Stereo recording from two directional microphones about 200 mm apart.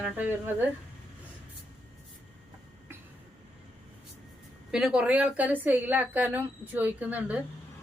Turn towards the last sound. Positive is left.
turn(degrees=-10)  # may be behind; listen again after turning